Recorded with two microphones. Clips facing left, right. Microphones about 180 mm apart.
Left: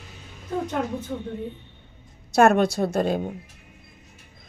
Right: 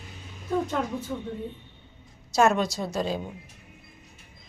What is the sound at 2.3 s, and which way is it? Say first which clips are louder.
A woman's voice: left 5 dB; 55° left (ahead or behind).